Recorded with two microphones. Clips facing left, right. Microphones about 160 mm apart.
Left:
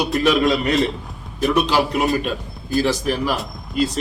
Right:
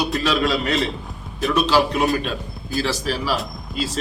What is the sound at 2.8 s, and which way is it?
Speech, 15° left (ahead or behind).